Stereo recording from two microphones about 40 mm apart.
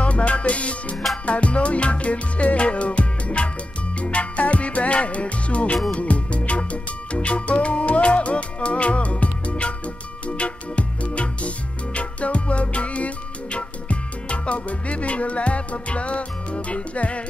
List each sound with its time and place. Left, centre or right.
0.0 s music: left